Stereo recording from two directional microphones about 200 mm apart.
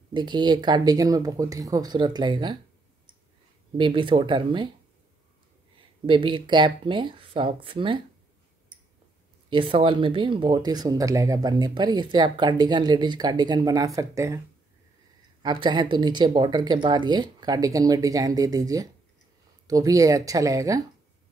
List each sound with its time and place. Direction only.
0.1 s speech: 20° right (ahead or behind)
3.7 s speech: 25° right (ahead or behind)
6.0 s speech: 25° right (ahead or behind)
9.5 s speech: 25° right (ahead or behind)
15.4 s speech: 20° right (ahead or behind)